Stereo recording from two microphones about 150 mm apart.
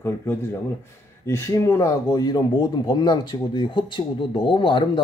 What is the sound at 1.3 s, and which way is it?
Speech, 20° left (ahead or behind).